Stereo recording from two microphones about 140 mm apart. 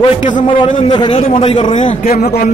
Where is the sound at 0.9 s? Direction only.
40° left (ahead or behind).